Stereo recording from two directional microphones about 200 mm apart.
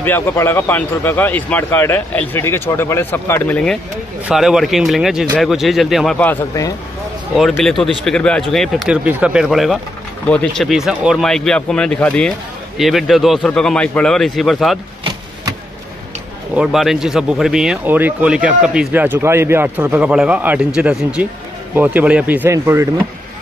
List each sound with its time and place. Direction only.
0.0 s a man's voice: 10° left (ahead or behind)
7.3 s speech: centre (ahead or behind)
16.5 s speech: centre (ahead or behind)